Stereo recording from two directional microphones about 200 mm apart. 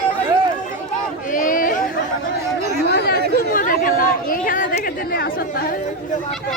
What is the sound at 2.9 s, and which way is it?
Chatter, 55° left (ahead or behind).